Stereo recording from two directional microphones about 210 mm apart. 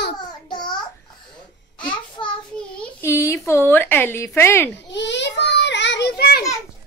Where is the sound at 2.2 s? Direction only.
20° left (ahead or behind).